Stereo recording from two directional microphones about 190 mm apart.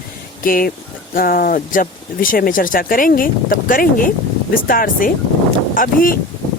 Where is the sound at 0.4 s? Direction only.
50° left (ahead or behind).